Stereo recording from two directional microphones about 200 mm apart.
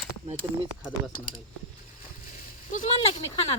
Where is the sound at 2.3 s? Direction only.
45° left (ahead or behind).